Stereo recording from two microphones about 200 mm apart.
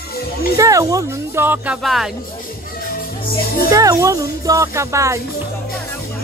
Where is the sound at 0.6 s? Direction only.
15° right (ahead or behind); by 2.1 s centre (ahead or behind).